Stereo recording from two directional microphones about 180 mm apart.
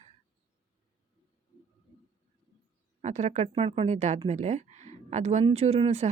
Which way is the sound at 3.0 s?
40° right (ahead or behind).